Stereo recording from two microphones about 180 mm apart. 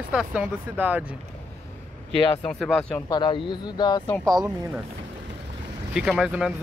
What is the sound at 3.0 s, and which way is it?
Speech, 25° left (ahead or behind).